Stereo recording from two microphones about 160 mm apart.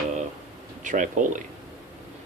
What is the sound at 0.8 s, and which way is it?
Speech, 55° right (ahead or behind).